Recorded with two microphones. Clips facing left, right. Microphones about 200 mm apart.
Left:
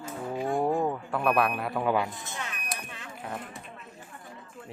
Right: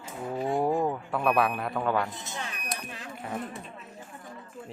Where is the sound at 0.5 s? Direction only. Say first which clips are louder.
Even; centre (ahead or behind).